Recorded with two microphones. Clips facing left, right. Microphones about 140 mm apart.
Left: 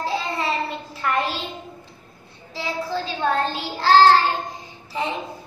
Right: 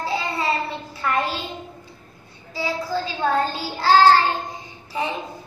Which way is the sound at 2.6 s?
Centre (ahead or behind).